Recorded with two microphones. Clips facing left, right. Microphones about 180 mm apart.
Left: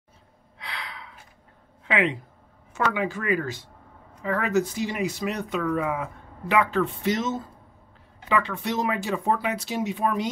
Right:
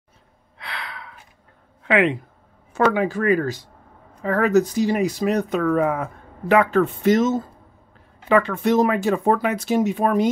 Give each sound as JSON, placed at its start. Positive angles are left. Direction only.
{"t": 0.6, "sound": "gasp", "side_deg": -60}
{"t": 1.8, "sound": "speech", "side_deg": -60}
{"t": 2.7, "sound": "speech", "side_deg": -40}